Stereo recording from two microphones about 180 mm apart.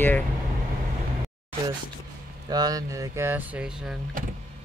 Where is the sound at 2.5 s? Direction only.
20° right (ahead or behind).